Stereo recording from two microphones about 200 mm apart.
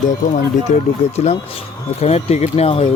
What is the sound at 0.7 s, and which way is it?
Speech, 35° left (ahead or behind).